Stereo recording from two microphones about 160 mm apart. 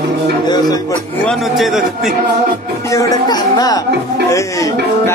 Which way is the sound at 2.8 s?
20° left (ahead or behind).